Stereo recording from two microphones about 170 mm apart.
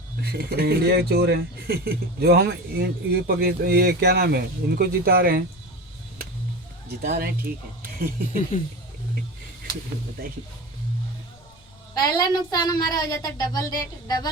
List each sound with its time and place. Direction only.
0.2 s speech: 70° right (ahead or behind)
7.0 s speech: 65° right (ahead or behind)
11.9 s a woman's voice: 25° left (ahead or behind)